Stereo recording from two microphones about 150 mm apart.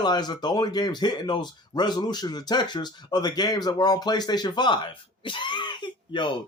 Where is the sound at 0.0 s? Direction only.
30° left (ahead or behind).